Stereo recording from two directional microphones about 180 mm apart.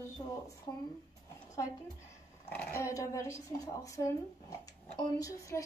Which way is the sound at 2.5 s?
15° left (ahead or behind).